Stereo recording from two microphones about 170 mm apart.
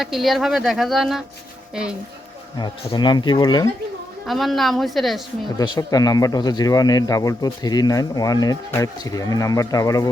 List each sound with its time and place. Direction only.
0.0 s speech: centre (ahead or behind)
2.6 s speech: 25° left (ahead or behind)
4.3 s speech: centre (ahead or behind)
5.5 s speech: 20° left (ahead or behind)